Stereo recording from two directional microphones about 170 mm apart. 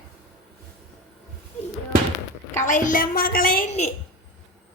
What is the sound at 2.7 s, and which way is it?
A woman's voice, 50° left (ahead or behind).